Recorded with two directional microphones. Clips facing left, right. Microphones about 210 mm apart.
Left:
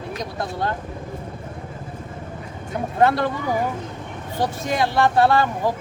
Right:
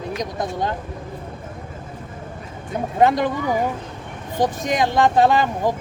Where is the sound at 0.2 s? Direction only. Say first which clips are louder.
Right 1 dB; 15° right (ahead or behind).